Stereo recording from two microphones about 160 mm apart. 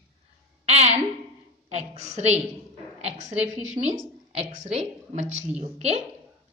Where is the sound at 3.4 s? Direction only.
40° right (ahead or behind).